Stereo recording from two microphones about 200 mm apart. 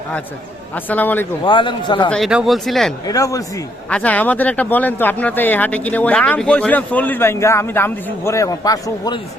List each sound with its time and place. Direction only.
0.9 s speech: 10° left (ahead or behind)
1.5 s a man's voice: 25° left (ahead or behind)
2.0 s speech: centre (ahead or behind)
3.1 s speech: 15° left (ahead or behind)
3.8 s speech: 5° left (ahead or behind)